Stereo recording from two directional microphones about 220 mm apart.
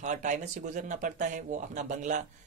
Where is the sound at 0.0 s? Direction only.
35° right (ahead or behind).